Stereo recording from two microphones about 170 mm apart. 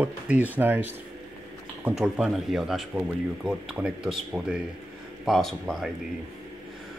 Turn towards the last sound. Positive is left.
turn(degrees=0)  # may be behind; listen again after turning